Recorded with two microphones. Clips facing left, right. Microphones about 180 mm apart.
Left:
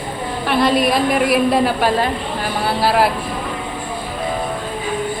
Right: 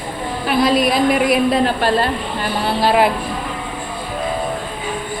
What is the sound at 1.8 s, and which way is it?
A woman's voice, 15° left (ahead or behind).